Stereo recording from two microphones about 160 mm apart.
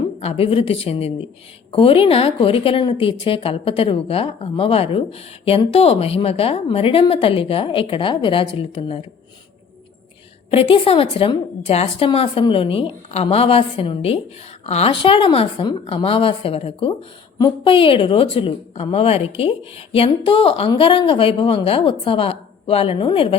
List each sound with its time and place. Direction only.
0.2 s a woman's voice: 40° left (ahead or behind)
10.5 s a woman's voice: 35° left (ahead or behind)